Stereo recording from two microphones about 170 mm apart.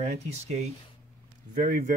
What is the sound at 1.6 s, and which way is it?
Speech, 55° right (ahead or behind).